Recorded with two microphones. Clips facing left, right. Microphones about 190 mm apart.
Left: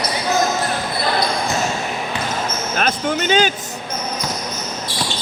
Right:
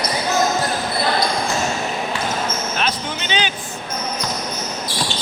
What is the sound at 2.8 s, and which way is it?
Music, 50° left (ahead or behind).